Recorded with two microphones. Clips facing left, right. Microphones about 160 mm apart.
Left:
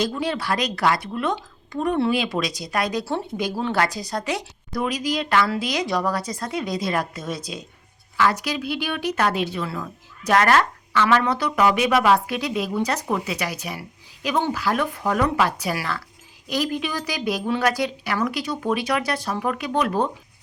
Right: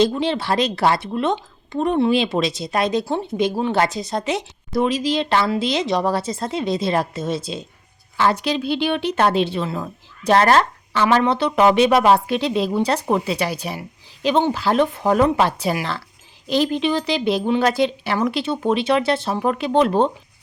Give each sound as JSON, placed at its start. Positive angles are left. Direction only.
{"t": 0.0, "sound": "a woman's voice", "side_deg": -25}